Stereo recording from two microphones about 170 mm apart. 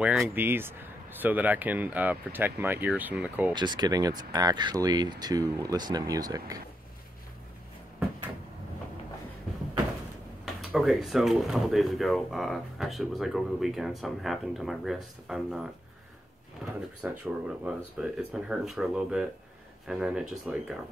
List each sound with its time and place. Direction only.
0.0 s speech: 5° right (ahead or behind)
3.5 s speech: 25° right (ahead or behind)
10.4 s speech: centre (ahead or behind)
16.6 s drawer open or close: centre (ahead or behind)
17.0 s speech: 10° right (ahead or behind)